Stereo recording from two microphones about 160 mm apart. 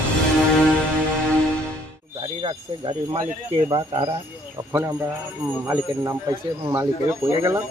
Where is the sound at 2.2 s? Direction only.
30° right (ahead or behind).